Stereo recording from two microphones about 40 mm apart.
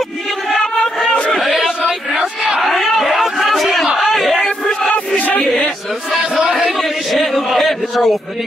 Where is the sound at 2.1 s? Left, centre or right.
Centre.